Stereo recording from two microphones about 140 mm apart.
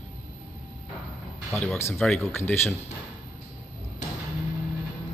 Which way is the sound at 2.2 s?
15° left (ahead or behind).